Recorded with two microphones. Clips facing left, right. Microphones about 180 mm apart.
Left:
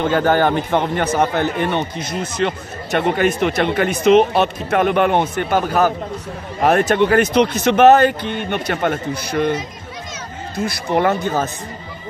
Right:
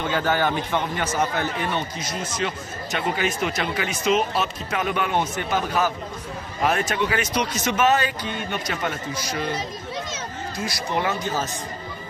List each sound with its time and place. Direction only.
0.0 s a man's voice: 50° left (ahead or behind)
10.5 s a man's voice: 55° left (ahead or behind)